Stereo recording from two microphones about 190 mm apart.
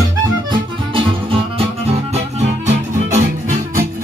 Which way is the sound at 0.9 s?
25° right (ahead or behind).